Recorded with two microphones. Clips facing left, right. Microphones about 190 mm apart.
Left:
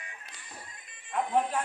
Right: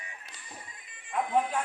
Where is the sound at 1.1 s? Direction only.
5° right (ahead or behind).